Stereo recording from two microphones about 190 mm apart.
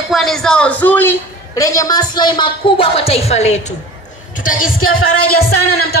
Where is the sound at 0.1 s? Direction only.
Centre (ahead or behind); by 3.7 s 35° left (ahead or behind).